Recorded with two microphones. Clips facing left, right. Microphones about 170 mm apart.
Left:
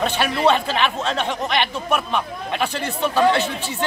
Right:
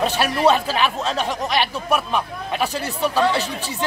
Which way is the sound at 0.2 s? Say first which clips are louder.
Right 1 dB; 5° right (ahead or behind).